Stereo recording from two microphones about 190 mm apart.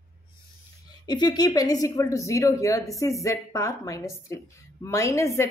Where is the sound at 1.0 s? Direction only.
20° left (ahead or behind).